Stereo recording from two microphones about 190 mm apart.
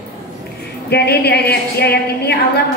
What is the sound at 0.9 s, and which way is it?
A woman's voice, 60° left (ahead or behind).